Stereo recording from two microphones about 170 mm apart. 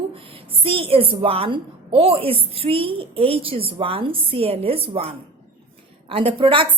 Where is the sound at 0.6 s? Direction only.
30° right (ahead or behind).